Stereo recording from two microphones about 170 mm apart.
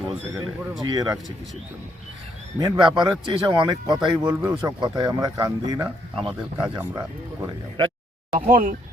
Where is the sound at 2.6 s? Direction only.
25° right (ahead or behind).